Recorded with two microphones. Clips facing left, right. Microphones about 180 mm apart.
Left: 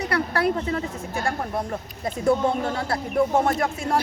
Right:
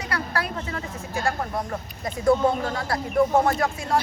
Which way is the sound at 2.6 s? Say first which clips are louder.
Left 1 dB; 25° left (ahead or behind).